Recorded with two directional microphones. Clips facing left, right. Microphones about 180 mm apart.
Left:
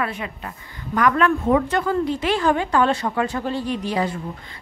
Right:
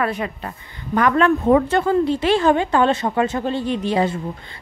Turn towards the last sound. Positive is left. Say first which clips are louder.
# right 4 dB
turn(degrees=-25)  # may be behind; listen again after turning